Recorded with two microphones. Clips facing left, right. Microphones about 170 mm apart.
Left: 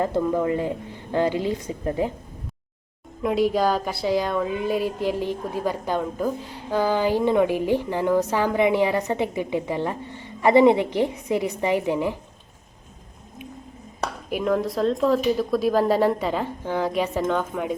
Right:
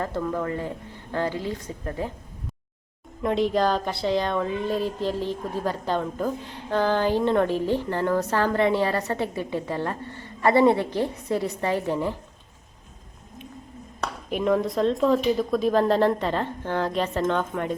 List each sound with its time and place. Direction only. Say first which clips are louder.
0.0 s a woman's voice: left 5 dB; 15° left (ahead or behind)
3.2 s a woman's voice: left 1 dB; 5° left (ahead or behind)
14.3 s speech: right 1 dB; centre (ahead or behind)